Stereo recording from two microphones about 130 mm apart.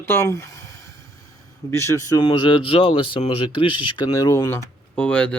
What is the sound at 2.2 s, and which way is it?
Speech, 40° left (ahead or behind).